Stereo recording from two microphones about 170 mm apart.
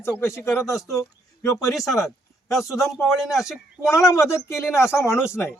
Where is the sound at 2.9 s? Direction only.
Centre (ahead or behind).